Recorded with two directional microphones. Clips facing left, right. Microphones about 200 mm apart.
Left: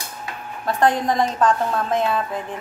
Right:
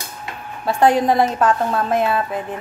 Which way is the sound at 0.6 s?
10° right (ahead or behind).